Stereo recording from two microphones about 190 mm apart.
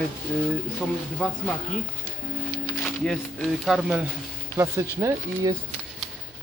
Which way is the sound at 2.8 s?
Centre (ahead or behind).